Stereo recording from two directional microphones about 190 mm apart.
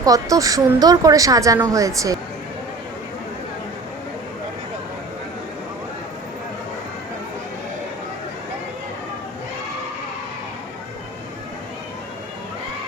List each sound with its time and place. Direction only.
0.0 s speech: 20° right (ahead or behind)